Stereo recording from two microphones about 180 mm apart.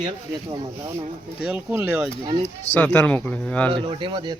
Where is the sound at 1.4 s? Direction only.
10° right (ahead or behind).